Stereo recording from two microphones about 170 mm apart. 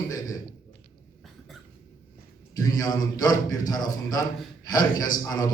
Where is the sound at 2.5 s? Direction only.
20° left (ahead or behind).